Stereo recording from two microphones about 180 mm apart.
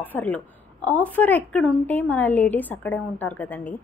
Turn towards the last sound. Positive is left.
turn(degrees=10)  # may be behind; listen again after turning